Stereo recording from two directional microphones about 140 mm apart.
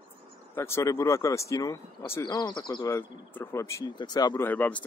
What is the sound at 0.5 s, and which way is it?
Speech, 20° left (ahead or behind).